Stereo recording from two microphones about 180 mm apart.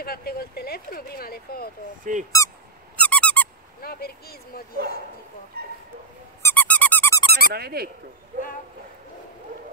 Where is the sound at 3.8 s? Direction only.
55° left (ahead or behind).